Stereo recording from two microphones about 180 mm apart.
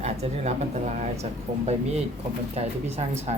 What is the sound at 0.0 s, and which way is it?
Speech, 35° right (ahead or behind).